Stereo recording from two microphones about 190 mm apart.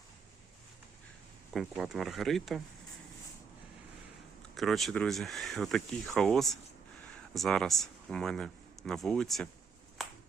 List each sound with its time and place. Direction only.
1.5 s speech: centre (ahead or behind)
4.5 s speech: centre (ahead or behind)
10.0 s finger snapping: centre (ahead or behind)